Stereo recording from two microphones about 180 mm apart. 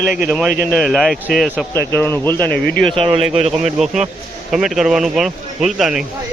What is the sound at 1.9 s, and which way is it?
Speech, 10° left (ahead or behind).